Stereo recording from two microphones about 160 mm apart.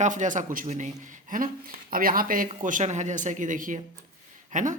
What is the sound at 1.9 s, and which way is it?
Speech, 65° right (ahead or behind).